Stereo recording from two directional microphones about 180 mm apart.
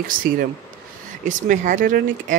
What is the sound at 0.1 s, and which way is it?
Speech, 50° right (ahead or behind).